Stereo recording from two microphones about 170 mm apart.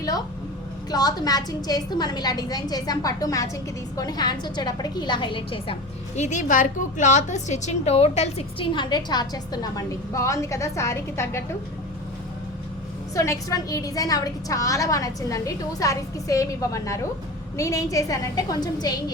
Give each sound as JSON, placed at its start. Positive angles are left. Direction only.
{"t": 0.9, "sound": "a woman's voice", "side_deg": 20}
{"t": 6.1, "sound": "a woman's voice", "side_deg": 45}
{"t": 13.1, "sound": "a woman's voice", "side_deg": 20}